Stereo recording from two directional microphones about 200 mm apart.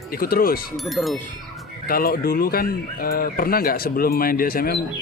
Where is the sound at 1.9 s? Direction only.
50° left (ahead or behind).